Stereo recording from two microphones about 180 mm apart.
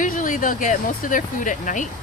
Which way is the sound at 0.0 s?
45° left (ahead or behind).